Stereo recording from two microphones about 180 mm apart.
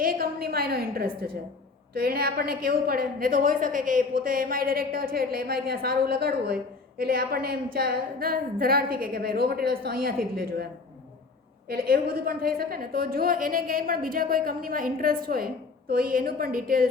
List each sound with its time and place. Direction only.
0.0 s a woman's voice: 55° right (ahead or behind)
11.7 s a woman's voice: 55° right (ahead or behind)